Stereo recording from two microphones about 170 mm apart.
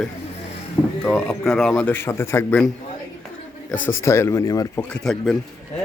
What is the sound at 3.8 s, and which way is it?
Speech, 15° left (ahead or behind).